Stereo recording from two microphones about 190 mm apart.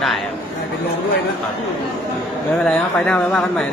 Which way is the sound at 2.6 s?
5° left (ahead or behind).